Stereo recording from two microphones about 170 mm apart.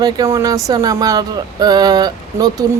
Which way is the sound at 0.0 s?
20° right (ahead or behind).